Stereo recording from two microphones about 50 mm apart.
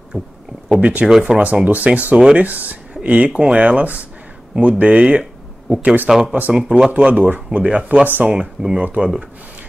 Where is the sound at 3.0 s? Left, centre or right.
Right.